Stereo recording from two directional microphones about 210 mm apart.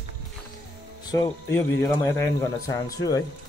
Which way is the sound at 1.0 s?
15° left (ahead or behind).